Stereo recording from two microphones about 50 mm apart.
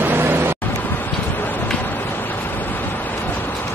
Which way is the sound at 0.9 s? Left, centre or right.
Left.